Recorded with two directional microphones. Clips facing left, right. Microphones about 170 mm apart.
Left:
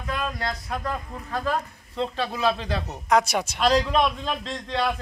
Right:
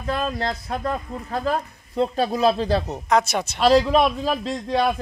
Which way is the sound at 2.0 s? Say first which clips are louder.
Right 6 dB; 40° right (ahead or behind).